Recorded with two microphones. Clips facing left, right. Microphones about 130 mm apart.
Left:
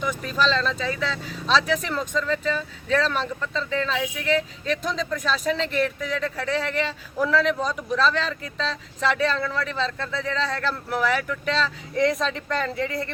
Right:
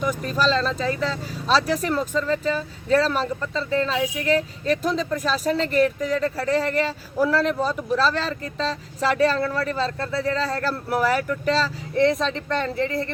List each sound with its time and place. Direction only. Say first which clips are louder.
0.0 s speech: right 2 dB; 40° right (ahead or behind)